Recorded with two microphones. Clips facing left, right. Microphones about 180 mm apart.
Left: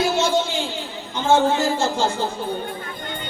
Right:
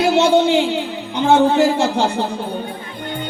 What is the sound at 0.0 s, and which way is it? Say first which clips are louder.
Music: right 7 dB; 65° right (ahead or behind).